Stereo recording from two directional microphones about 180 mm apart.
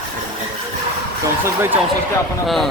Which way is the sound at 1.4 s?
10° right (ahead or behind).